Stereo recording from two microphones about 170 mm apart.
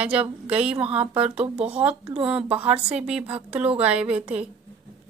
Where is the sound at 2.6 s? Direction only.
10° right (ahead or behind).